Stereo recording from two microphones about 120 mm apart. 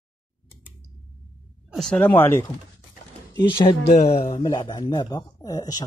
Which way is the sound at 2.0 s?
15° left (ahead or behind).